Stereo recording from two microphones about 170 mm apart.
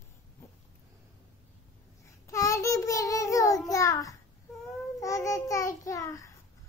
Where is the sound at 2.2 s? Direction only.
20° left (ahead or behind).